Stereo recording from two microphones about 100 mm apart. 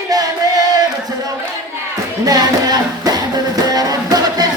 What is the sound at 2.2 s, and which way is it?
Music, 40° right (ahead or behind).